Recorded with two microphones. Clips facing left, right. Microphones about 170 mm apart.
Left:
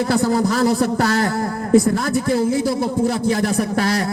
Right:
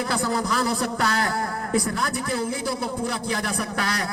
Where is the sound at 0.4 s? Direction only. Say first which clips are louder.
Left 8 dB; 45° left (ahead or behind).